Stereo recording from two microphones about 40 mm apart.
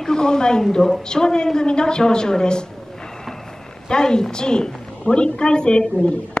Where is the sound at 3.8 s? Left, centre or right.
Centre.